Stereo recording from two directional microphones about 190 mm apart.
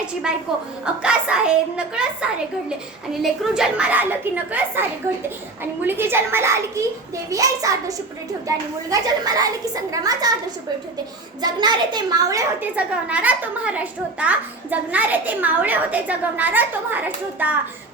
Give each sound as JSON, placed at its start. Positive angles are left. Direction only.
{"t": 0.3, "sound": "a child's voice", "side_deg": -5}
{"t": 11.3, "sound": "a child's voice", "side_deg": -20}